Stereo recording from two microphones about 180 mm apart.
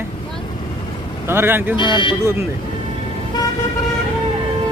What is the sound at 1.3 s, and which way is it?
Speech, 10° right (ahead or behind).